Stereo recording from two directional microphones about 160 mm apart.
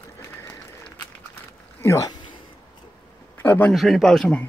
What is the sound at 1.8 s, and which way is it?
Speech, 20° left (ahead or behind).